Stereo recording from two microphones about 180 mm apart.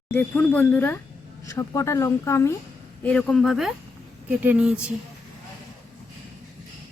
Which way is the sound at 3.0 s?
5° left (ahead or behind).